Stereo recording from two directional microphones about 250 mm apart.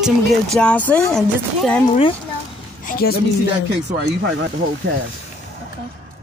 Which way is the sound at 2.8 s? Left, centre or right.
Left.